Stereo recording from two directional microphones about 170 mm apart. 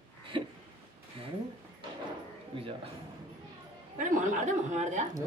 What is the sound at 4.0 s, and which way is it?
Speech, 50° right (ahead or behind).